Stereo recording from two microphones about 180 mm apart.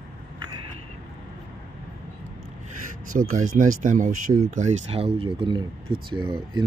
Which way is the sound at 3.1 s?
45° right (ahead or behind).